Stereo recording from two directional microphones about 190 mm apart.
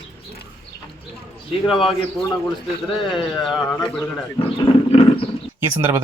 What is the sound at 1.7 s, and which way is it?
Speech, 25° left (ahead or behind).